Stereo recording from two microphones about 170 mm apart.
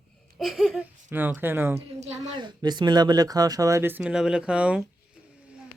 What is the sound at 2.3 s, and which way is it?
Speech, 25° right (ahead or behind).